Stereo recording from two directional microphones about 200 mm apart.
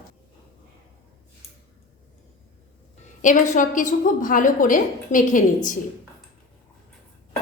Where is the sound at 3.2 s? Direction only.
40° left (ahead or behind).